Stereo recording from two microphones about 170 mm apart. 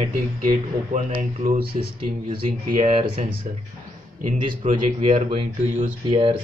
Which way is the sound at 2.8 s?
40° right (ahead or behind).